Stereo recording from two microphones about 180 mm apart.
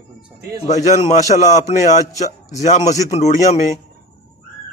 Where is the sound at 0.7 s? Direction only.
40° left (ahead or behind).